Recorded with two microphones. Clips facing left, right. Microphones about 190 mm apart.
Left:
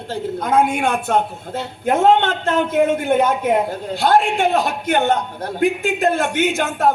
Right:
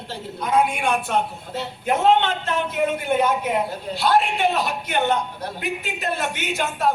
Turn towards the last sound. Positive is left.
turn(degrees=50)  # may be behind; listen again after turning